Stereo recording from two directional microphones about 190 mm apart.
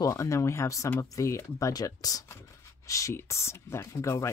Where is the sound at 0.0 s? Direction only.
15° left (ahead or behind).